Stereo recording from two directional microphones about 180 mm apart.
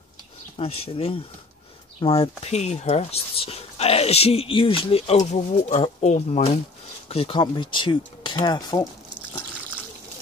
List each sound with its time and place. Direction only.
0.6 s speech: 30° left (ahead or behind)